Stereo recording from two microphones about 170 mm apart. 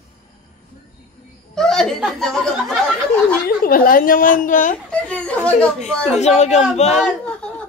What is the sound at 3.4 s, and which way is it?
A woman's voice, 60° left (ahead or behind).